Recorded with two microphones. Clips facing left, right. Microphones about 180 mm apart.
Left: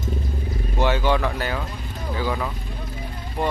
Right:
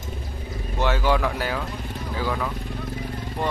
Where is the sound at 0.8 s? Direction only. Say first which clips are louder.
Left 1 dB; centre (ahead or behind).